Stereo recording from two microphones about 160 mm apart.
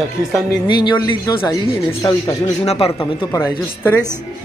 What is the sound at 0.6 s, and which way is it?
Speech, 30° left (ahead or behind).